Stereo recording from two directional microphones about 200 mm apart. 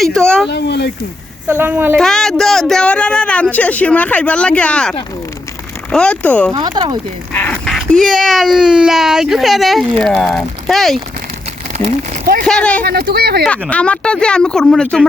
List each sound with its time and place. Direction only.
0.0 s a sound: 5° left (ahead or behind)
0.5 s speech: 55° left (ahead or behind)
1.5 s a woman's voice: 10° right (ahead or behind)
2.0 s speech: centre (ahead or behind)
6.5 s speech: 20° right (ahead or behind)
7.3 s duck: 5° left (ahead or behind)
8.0 s speech: centre (ahead or behind)
11.9 s speech: 45° right (ahead or behind)
12.5 s speech: 5° left (ahead or behind)
12.8 s speech: 50° right (ahead or behind)
13.4 s speech: 5° left (ahead or behind)